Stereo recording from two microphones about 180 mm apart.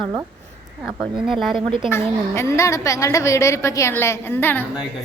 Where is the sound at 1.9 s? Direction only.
15° left (ahead or behind).